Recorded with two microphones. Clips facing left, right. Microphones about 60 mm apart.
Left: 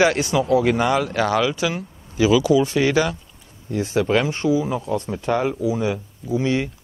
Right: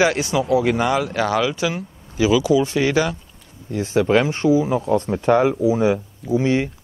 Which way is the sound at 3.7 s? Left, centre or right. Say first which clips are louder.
Right 2 dB; right.